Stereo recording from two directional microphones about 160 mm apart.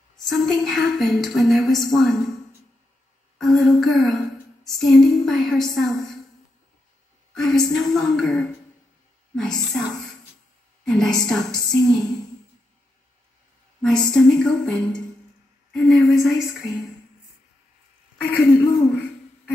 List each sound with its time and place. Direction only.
0.2 s a woman's voice: centre (ahead or behind)
7.3 s a woman's voice: 5° left (ahead or behind)
10.9 s a woman's voice: 5° left (ahead or behind)
13.7 s a woman's voice: 5° left (ahead or behind)
18.1 s a woman's voice: 5° left (ahead or behind)